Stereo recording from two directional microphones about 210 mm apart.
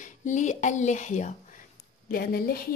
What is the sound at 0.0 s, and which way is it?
A woman's voice, 35° left (ahead or behind).